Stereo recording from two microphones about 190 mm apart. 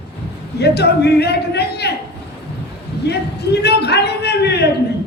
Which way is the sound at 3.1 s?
60° left (ahead or behind).